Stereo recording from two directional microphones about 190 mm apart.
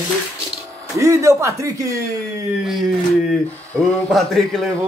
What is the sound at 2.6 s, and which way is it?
Speech, centre (ahead or behind).